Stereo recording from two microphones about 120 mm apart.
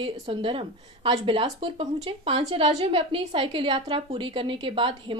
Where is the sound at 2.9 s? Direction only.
45° right (ahead or behind).